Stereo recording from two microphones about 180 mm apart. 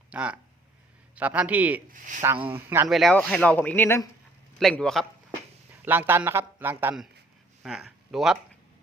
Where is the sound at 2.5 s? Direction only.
15° right (ahead or behind).